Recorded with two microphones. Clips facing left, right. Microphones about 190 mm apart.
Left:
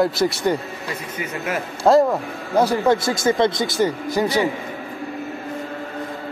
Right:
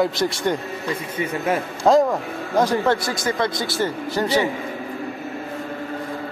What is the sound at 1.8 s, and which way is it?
Speech, 5° left (ahead or behind).